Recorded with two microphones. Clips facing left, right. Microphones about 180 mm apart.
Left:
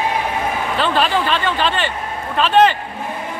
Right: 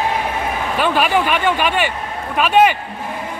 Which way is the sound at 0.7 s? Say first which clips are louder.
Right 2 dB; 10° right (ahead or behind).